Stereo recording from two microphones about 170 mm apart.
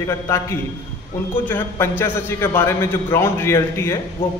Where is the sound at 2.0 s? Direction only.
15° left (ahead or behind).